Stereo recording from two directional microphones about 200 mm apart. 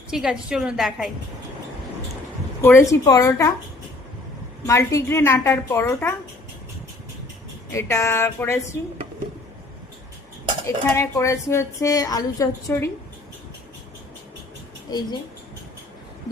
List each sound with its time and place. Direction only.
0.1 s a woman's voice: 5° right (ahead or behind)
2.6 s a woman's voice: 10° left (ahead or behind)
4.6 s a woman's voice: 15° left (ahead or behind)
7.7 s a woman's voice: 15° left (ahead or behind)
10.8 s a woman's voice: 15° left (ahead or behind)
14.9 s a woman's voice: 20° left (ahead or behind)